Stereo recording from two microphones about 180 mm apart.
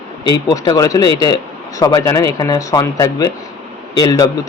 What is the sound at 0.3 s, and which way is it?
Speech, 20° left (ahead or behind).